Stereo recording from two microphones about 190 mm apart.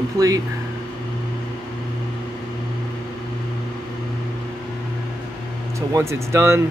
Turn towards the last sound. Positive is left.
turn(degrees=-15)  # may be behind; listen again after turning